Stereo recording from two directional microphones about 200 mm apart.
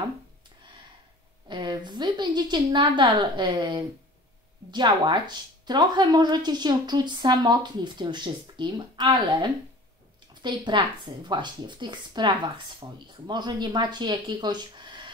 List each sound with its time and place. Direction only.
1.5 s speech: 20° right (ahead or behind)